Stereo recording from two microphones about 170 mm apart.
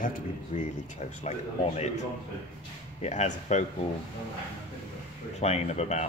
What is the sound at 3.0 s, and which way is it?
Speech, 45° left (ahead or behind).